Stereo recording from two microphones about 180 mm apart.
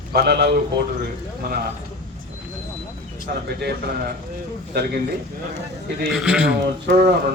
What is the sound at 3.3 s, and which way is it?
Speech, 55° right (ahead or behind).